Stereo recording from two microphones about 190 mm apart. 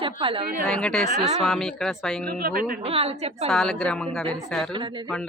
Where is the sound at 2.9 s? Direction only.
30° right (ahead or behind).